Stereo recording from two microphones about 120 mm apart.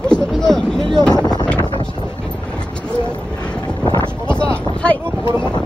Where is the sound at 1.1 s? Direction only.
35° left (ahead or behind).